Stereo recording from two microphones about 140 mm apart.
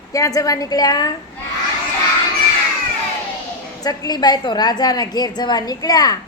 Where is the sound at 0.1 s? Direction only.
25° left (ahead or behind).